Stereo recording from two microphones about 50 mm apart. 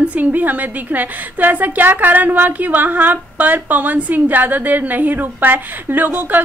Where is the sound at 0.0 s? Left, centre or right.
Right.